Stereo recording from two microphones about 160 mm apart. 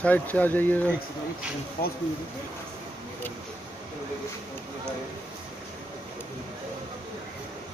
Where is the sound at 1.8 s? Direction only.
75° left (ahead or behind).